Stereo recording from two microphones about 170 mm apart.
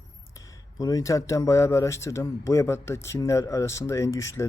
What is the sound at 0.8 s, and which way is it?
Speech, 20° left (ahead or behind).